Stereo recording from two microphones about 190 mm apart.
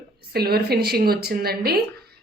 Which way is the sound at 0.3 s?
55° right (ahead or behind).